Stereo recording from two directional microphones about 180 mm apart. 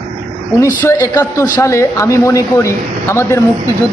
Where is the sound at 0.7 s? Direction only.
15° left (ahead or behind).